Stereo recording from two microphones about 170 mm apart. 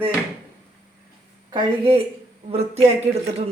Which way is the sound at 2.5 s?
40° right (ahead or behind).